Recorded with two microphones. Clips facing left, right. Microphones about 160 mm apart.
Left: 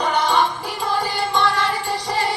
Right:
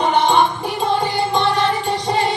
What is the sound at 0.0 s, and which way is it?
Music, 25° right (ahead or behind).